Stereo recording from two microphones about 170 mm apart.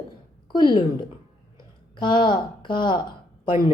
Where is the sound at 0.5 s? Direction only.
30° left (ahead or behind).